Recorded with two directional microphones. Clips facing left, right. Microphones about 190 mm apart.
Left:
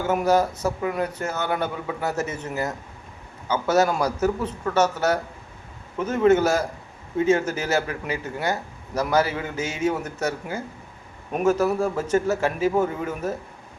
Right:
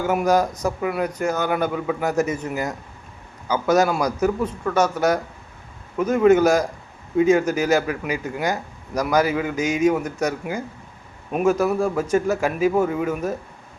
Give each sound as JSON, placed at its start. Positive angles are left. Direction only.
{"t": 0.1, "sound": "a man's voice", "side_deg": -10}